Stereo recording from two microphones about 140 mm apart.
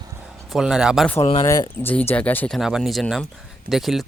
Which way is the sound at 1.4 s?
20° left (ahead or behind).